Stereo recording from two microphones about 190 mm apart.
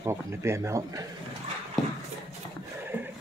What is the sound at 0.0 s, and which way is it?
Speech, 15° right (ahead or behind).